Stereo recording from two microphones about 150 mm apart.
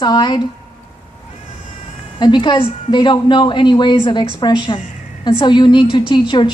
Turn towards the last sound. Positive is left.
turn(degrees=30)  # may be behind; listen again after turning